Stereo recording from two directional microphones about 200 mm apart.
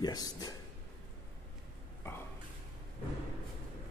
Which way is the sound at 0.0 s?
20° left (ahead or behind).